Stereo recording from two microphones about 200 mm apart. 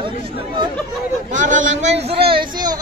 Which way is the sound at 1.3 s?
40° right (ahead or behind).